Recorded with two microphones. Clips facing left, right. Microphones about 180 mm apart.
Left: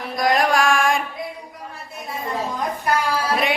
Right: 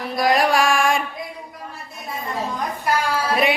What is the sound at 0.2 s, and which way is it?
Music, 5° right (ahead or behind).